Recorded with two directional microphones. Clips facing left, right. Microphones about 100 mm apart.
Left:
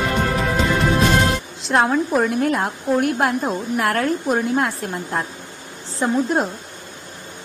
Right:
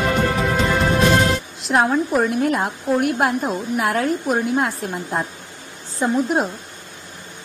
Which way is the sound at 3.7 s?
15° right (ahead or behind).